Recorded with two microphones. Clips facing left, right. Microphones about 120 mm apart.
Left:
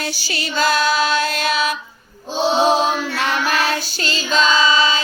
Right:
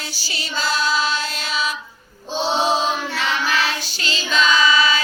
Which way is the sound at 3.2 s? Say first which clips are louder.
Left 2 dB; 50° left (ahead or behind).